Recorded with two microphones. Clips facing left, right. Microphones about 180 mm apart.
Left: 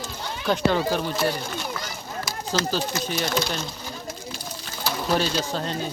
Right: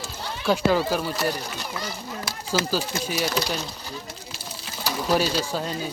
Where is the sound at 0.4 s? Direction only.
5° right (ahead or behind).